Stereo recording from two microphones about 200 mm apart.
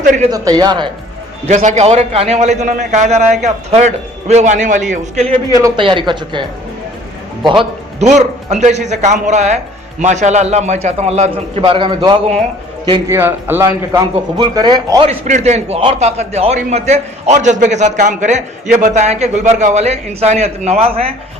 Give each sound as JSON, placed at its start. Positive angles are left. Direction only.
{"t": 0.0, "sound": "a man's voice", "side_deg": -40}
{"t": 0.3, "sound": "speech", "side_deg": -20}
{"t": 1.5, "sound": "speech", "side_deg": -35}
{"t": 5.5, "sound": "speech", "side_deg": -20}
{"t": 7.4, "sound": "a man's voice", "side_deg": -25}
{"t": 13.1, "sound": "speech", "side_deg": -10}